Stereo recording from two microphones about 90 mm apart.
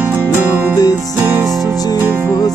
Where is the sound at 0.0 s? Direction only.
20° right (ahead or behind).